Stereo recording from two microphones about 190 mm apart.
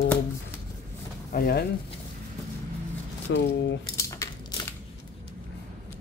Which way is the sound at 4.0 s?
15° left (ahead or behind).